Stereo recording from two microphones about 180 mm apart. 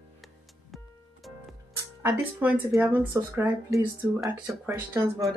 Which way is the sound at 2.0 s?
10° right (ahead or behind).